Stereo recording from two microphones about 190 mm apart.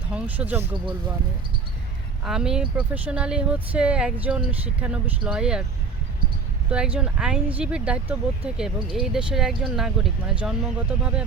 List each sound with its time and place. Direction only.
0.1 s speech: 5° right (ahead or behind)
2.2 s speech: 5° right (ahead or behind)
6.7 s speech: 5° right (ahead or behind)